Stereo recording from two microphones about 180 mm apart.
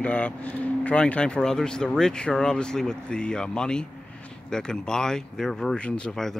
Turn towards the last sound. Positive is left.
turn(degrees=5)  # may be behind; listen again after turning